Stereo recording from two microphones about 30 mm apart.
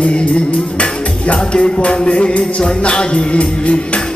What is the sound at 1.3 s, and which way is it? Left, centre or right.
Music, left.